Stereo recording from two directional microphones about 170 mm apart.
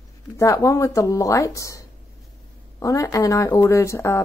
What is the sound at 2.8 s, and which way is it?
Speech, 20° left (ahead or behind).